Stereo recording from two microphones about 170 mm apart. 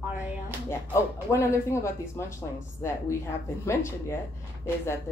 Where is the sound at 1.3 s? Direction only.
15° left (ahead or behind).